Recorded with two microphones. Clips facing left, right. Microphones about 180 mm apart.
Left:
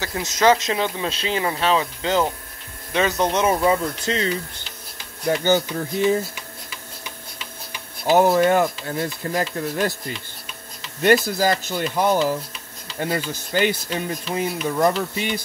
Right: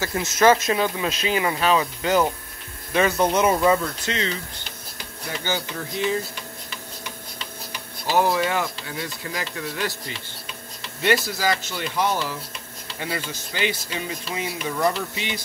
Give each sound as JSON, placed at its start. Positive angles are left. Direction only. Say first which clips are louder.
{"t": 0.0, "sound": "speech", "louder": "right 1 dB", "side_deg": 20}
{"t": 0.9, "sound": "speech", "louder": "right 1 dB", "side_deg": 30}
{"t": 4.0, "sound": "speech", "louder": "left 3 dB", "side_deg": 35}
{"t": 5.3, "sound": "speech", "louder": "left 11 dB", "side_deg": 45}
{"t": 8.2, "sound": "speech", "louder": "left 5 dB", "side_deg": 50}